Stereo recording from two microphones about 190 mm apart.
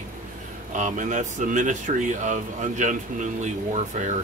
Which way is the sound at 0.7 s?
40° right (ahead or behind).